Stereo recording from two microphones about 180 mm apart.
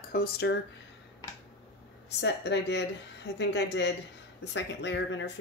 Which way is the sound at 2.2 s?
70° left (ahead or behind).